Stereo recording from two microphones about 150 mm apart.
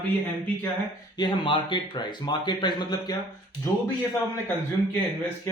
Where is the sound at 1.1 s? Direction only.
30° left (ahead or behind).